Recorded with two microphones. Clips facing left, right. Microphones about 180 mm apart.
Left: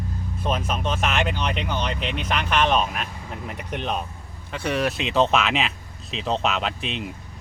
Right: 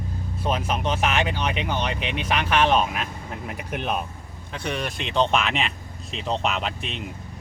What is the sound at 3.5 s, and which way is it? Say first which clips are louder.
Speech: right 1 dB; 10° right (ahead or behind).